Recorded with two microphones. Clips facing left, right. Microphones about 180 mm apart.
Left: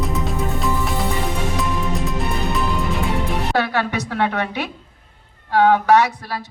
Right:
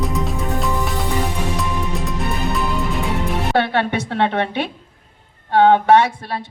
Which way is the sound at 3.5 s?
25° right (ahead or behind).